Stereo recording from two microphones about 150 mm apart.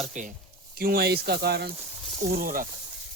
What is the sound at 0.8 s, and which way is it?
Speech, 90° right.